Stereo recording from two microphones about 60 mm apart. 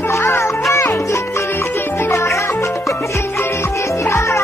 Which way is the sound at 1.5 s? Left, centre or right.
Left.